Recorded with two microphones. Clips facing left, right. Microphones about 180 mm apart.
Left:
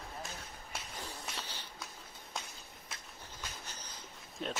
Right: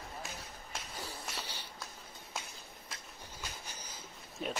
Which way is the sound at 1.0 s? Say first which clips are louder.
Right 1 dB; 10° right (ahead or behind).